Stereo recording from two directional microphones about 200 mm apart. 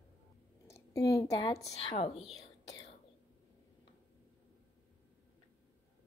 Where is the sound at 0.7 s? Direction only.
15° left (ahead or behind).